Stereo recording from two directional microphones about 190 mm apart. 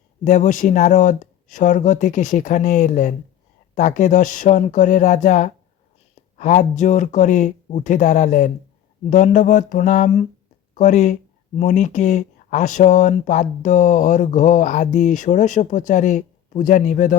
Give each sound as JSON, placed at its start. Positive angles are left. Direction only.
{"t": 0.3, "sound": "speech", "side_deg": 40}